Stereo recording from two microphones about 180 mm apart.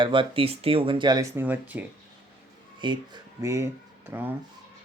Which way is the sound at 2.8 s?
25° right (ahead or behind).